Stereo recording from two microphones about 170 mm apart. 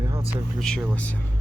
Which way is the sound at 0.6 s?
5° left (ahead or behind).